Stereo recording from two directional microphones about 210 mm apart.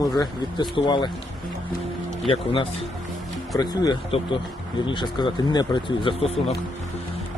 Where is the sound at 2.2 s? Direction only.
25° left (ahead or behind).